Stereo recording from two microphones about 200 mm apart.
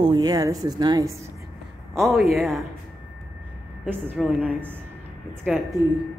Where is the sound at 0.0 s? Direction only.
20° right (ahead or behind).